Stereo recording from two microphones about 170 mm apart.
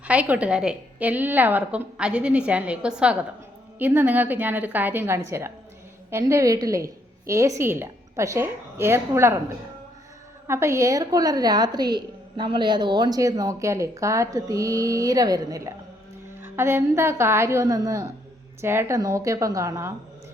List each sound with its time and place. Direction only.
0.0 s a woman's voice: 10° right (ahead or behind)
10.4 s a woman's voice: 15° right (ahead or behind)